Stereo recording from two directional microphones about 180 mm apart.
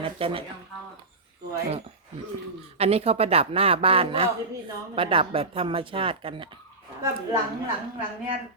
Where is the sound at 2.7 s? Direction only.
35° right (ahead or behind).